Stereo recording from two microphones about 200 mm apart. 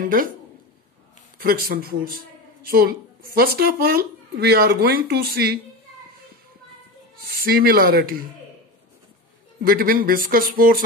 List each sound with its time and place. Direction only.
0.0 s speech: 45° right (ahead or behind)
1.4 s speech: 50° right (ahead or behind)
7.3 s speech: 50° right (ahead or behind)
9.6 s speech: 50° right (ahead or behind)